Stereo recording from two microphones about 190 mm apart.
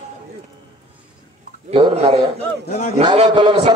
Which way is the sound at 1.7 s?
30° right (ahead or behind).